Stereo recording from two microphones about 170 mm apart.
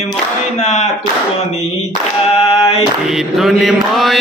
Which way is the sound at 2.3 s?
35° left (ahead or behind).